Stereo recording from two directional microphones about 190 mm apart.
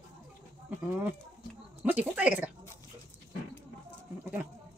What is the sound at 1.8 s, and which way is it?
Speech, 10° right (ahead or behind).